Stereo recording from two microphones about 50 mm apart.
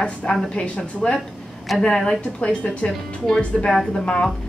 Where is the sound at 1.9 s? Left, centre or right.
Centre.